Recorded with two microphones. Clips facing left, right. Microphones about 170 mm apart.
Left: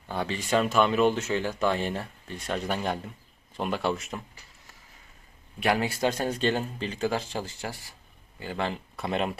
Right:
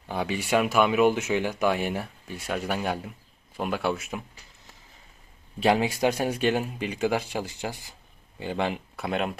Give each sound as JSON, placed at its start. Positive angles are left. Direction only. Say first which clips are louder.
{"t": 0.1, "sound": "speech", "louder": "right 1 dB", "side_deg": -10}
{"t": 5.5, "sound": "speech", "louder": "right 3 dB", "side_deg": -20}
{"t": 9.0, "sound": "speech", "louder": "left 1 dB", "side_deg": 0}